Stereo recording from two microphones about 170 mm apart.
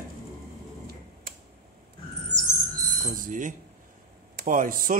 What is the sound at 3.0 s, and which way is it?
Speech, 50° right (ahead or behind).